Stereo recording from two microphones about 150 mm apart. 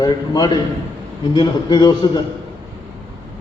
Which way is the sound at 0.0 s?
30° left (ahead or behind).